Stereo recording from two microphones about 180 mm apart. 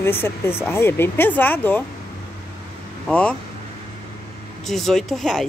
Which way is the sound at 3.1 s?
5° left (ahead or behind).